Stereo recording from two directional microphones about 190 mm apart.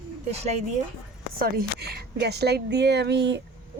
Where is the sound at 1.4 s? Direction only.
55° right (ahead or behind).